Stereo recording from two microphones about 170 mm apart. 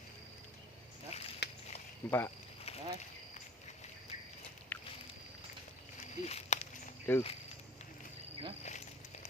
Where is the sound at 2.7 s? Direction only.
35° left (ahead or behind).